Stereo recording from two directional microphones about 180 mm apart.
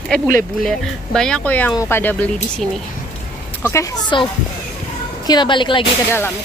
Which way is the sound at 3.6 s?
15° left (ahead or behind).